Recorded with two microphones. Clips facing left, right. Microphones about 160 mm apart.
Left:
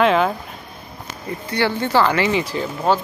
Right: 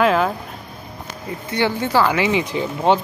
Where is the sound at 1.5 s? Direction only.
20° right (ahead or behind).